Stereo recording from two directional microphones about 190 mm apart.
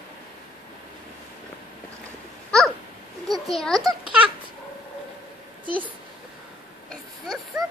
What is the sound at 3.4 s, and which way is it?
Speech, centre (ahead or behind).